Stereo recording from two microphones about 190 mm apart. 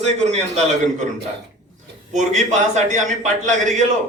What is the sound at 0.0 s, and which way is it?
A man's voice, 35° right (ahead or behind).